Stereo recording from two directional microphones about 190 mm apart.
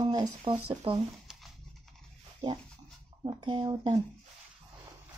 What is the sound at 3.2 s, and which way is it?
Speech, 25° right (ahead or behind).